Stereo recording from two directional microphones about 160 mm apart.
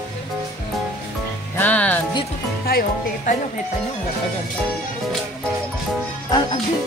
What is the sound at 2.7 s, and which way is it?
Speech, 70° left (ahead or behind).